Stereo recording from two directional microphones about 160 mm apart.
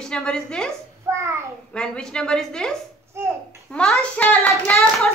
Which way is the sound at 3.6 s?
5° left (ahead or behind).